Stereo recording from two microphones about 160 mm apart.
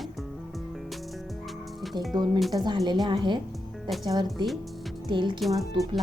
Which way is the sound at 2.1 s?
25° right (ahead or behind).